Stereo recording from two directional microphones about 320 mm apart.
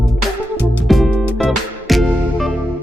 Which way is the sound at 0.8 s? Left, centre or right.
Centre.